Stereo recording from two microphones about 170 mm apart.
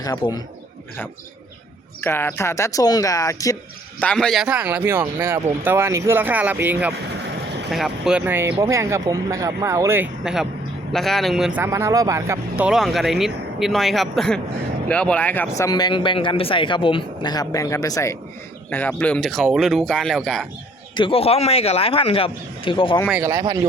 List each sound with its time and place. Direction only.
0.0 s speech: 25° left (ahead or behind)
2.0 s speech: 15° left (ahead or behind)
4.0 s speech: 5° left (ahead or behind)
8.2 s speech: 15° right (ahead or behind)
10.9 s speech: centre (ahead or behind)
11.6 s speech: 15° right (ahead or behind)
12.6 s speech: centre (ahead or behind)
20.9 s speech: 30° left (ahead or behind)
23.2 s speech: 20° right (ahead or behind)